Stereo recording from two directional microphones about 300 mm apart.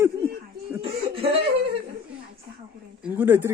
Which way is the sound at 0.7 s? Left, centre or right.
Centre.